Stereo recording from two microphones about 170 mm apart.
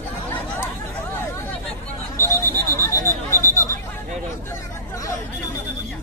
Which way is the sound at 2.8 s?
15° left (ahead or behind).